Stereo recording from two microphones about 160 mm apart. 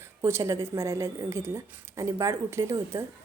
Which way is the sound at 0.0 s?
15° right (ahead or behind).